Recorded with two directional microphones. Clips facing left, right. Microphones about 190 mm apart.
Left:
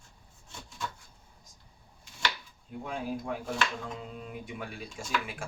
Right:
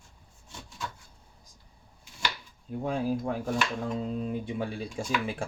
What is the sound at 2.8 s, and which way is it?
Speech, 35° right (ahead or behind).